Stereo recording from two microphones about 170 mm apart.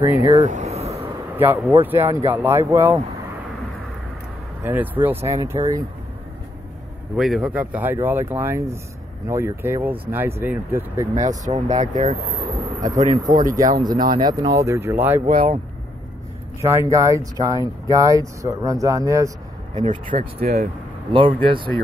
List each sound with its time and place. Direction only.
0.5 s a sound: 40° right (ahead or behind)
1.3 s speech: 10° right (ahead or behind)
4.6 s speech: 10° right (ahead or behind)
7.2 s speech: centre (ahead or behind)
11.2 s speech: 45° right (ahead or behind)
13.6 s speech: 25° right (ahead or behind)
15.2 s speech: 55° right (ahead or behind)
16.6 s speech: 15° right (ahead or behind)
19.7 s speech: 45° right (ahead or behind); by 20.6 s 60° right (ahead or behind)
21.1 s speech: 30° right (ahead or behind)